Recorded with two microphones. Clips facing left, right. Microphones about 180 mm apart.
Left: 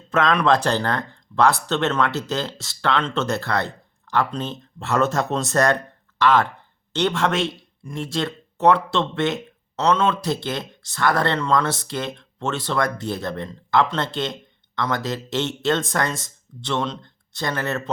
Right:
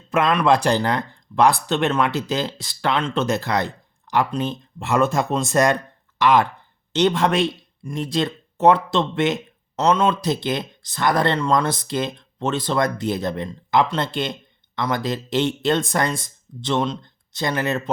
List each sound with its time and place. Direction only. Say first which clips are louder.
0.1 s speech: right 1 dB; 10° right (ahead or behind)